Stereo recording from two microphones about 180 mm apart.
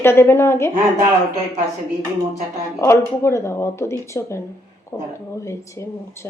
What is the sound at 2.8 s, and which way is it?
Speech, 15° left (ahead or behind).